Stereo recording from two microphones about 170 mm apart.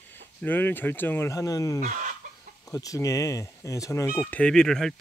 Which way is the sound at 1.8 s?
45° right (ahead or behind).